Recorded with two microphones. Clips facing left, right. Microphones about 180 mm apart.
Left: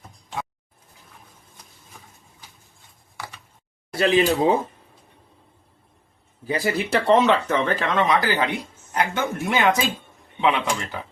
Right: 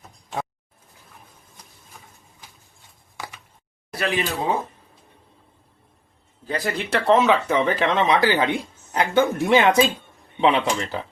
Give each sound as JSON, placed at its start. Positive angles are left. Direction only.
{"t": 3.9, "sound": "speech", "side_deg": 25}
{"t": 6.4, "sound": "speech", "side_deg": 10}